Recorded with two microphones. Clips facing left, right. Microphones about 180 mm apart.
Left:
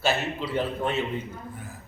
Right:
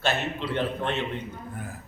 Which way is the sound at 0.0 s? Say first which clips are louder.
Left 1 dB; 5° left (ahead or behind).